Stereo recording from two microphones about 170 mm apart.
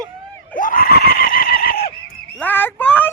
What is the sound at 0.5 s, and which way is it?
Screaming, 55° left (ahead or behind).